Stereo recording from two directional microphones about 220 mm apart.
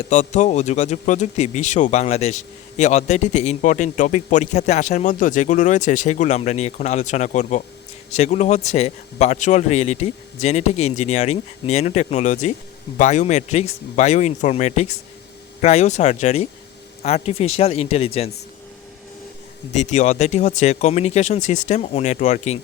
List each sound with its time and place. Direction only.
0.1 s speech: 35° left (ahead or behind)
19.7 s speech: 30° left (ahead or behind)